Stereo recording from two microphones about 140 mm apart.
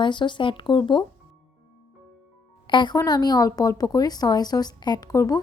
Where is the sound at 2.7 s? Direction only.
30° left (ahead or behind).